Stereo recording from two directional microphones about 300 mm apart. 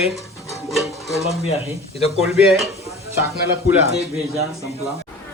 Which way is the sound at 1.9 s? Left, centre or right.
Centre.